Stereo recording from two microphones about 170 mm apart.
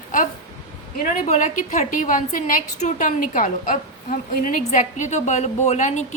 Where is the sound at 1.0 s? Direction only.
45° left (ahead or behind).